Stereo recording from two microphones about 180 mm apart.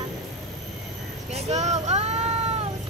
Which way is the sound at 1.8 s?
35° right (ahead or behind).